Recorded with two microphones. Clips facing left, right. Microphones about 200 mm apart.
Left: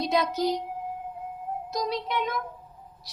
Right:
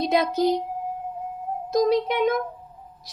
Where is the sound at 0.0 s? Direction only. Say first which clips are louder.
Right 4 dB; 55° right (ahead or behind).